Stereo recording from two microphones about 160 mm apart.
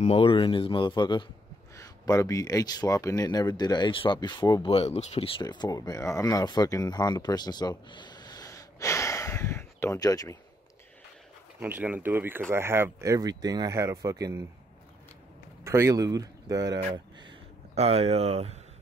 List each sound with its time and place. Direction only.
0.0 s speech: 35° left (ahead or behind)
4.6 s speech: 40° left (ahead or behind)
5.4 s speech: 25° left (ahead or behind)
11.6 s speech: 10° right (ahead or behind)
15.6 s speech: 20° right (ahead or behind)
17.7 s speech: 40° right (ahead or behind)